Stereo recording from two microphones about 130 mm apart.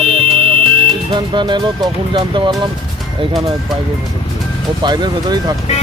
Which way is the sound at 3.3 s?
Centre (ahead or behind).